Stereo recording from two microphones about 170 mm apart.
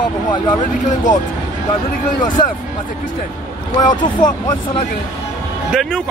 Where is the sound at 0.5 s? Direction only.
50° left (ahead or behind).